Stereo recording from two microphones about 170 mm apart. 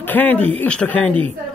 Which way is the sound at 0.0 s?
10° left (ahead or behind).